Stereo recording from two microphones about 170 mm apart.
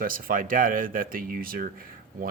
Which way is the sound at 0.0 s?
55° right (ahead or behind).